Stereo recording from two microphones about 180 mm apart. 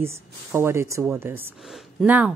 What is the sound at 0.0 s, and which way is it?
A woman's voice, 15° right (ahead or behind).